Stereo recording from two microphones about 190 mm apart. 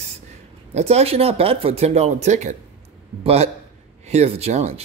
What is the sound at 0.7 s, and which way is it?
Speech, 35° right (ahead or behind).